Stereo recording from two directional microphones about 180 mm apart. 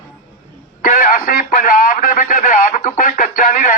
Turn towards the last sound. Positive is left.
turn(degrees=50)  # may be behind; listen again after turning